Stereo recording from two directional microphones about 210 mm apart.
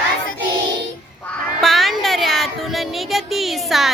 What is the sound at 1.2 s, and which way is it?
Music, centre (ahead or behind).